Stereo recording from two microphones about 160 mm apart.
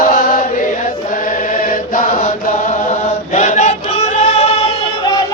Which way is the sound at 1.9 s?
55° left (ahead or behind).